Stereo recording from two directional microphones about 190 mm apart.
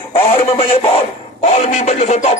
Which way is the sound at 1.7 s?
35° left (ahead or behind).